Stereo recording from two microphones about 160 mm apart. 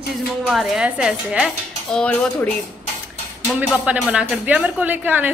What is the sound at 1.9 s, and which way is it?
Speech, 5° left (ahead or behind).